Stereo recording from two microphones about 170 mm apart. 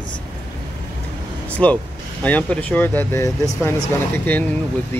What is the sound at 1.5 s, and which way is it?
Speech, 10° left (ahead or behind).